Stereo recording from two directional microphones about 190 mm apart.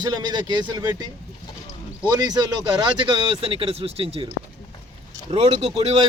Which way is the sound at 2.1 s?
20° right (ahead or behind).